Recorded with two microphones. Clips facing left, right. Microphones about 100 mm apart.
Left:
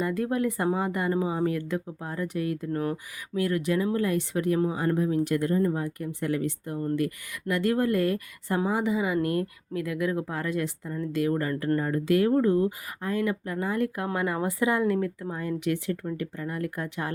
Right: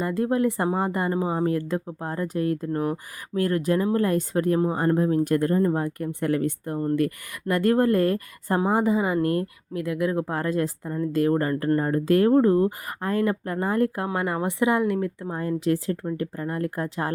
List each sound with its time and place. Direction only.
0.0 s speech: 30° right (ahead or behind)
10.2 s speech: 40° right (ahead or behind); by 15.3 s 20° right (ahead or behind)
15.3 s speech: 35° right (ahead or behind)